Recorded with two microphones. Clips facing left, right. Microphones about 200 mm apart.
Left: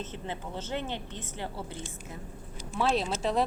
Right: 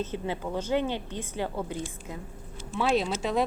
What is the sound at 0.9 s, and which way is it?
Speech, 20° left (ahead or behind).